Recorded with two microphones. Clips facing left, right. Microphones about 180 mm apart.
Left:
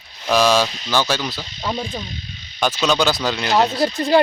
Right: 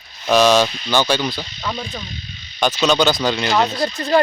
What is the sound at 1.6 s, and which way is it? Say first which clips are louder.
Insect: left 2 dB; 25° left (ahead or behind).